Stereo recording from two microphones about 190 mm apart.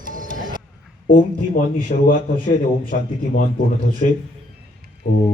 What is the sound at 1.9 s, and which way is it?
A man's voice, 45° left (ahead or behind).